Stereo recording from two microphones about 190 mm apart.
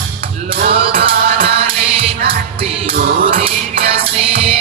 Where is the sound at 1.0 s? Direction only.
30° right (ahead or behind).